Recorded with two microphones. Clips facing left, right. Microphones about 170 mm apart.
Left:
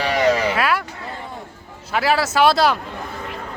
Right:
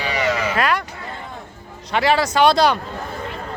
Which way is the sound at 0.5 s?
5° left (ahead or behind).